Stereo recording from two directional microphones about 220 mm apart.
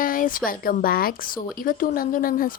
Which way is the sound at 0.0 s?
40° left (ahead or behind).